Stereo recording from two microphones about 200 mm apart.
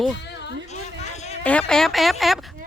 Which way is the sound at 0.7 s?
35° left (ahead or behind).